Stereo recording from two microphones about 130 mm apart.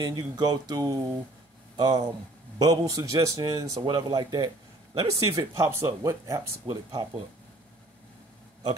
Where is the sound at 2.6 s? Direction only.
25° right (ahead or behind).